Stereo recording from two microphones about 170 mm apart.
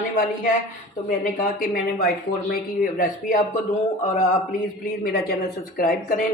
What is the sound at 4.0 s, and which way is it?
Speech, 40° left (ahead or behind).